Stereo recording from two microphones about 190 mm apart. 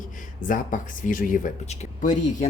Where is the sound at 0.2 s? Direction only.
45° left (ahead or behind).